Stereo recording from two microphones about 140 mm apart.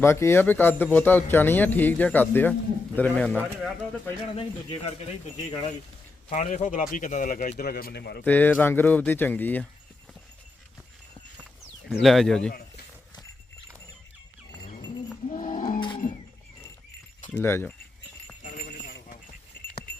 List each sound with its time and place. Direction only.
0.0 s speech: 20° left (ahead or behind)
4.4 s speech: 40° left (ahead or behind)
6.3 s speech: 60° left (ahead or behind); by 7.9 s 90° left
8.2 s speech: 10° left (ahead or behind)
11.9 s speech: centre (ahead or behind)
15.3 s roaring cats: 70° left (ahead or behind)
16.0 s livestock: 70° left (ahead or behind)
17.3 s speech: 15° left (ahead or behind)
18.4 s clip-clop: 80° left